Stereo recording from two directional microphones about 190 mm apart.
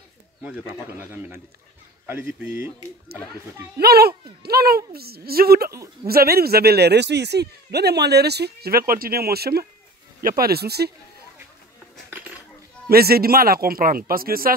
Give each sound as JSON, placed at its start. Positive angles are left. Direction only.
{"t": 0.4, "sound": "a man's voice", "side_deg": -5}
{"t": 3.8, "sound": "speech", "side_deg": -55}
{"t": 12.8, "sound": "speech", "side_deg": -55}